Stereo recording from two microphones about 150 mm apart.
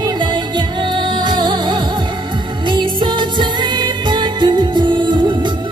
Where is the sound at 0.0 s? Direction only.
30° right (ahead or behind).